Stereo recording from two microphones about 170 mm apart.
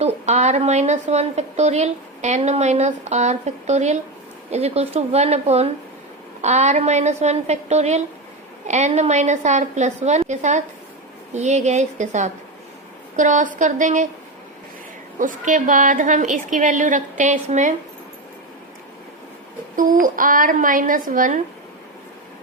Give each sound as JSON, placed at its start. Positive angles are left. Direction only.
{"t": 0.0, "sound": "a woman's voice", "side_deg": -40}
{"t": 15.2, "sound": "a woman's voice", "side_deg": -50}
{"t": 19.7, "sound": "a woman's voice", "side_deg": -50}